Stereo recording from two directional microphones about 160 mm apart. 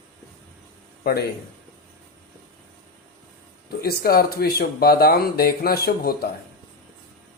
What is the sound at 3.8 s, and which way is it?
Speech, 75° left (ahead or behind).